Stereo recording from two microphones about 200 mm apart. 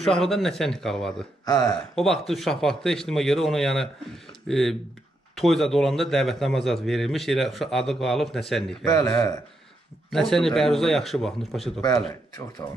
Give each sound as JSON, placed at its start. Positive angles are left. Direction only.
{"t": 0.0, "sound": "a man's voice", "side_deg": 0}
{"t": 1.4, "sound": "speech", "side_deg": 20}
{"t": 2.0, "sound": "a man's voice", "side_deg": 0}
{"t": 8.8, "sound": "a man's voice", "side_deg": 15}
{"t": 10.1, "sound": "a man's voice", "side_deg": 0}
{"t": 11.8, "sound": "speech", "side_deg": 20}